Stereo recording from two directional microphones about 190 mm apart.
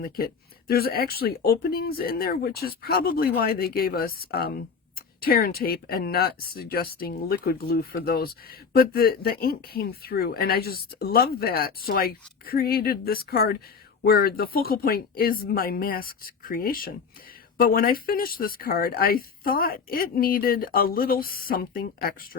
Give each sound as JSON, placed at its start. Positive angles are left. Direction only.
{"t": 0.7, "sound": "speech", "side_deg": 55}